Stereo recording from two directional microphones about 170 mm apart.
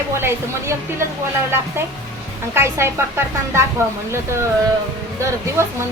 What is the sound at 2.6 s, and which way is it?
A woman's voice, 15° right (ahead or behind).